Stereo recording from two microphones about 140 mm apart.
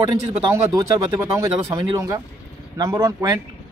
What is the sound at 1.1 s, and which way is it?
Speech, 25° right (ahead or behind).